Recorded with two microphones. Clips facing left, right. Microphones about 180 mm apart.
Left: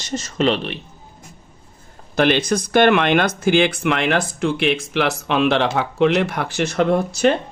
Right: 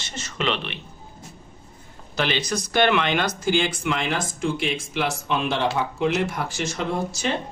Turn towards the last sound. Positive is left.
turn(degrees=60)  # may be behind; listen again after turning